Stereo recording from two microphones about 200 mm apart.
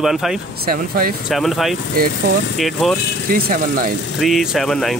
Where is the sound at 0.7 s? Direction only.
45° right (ahead or behind).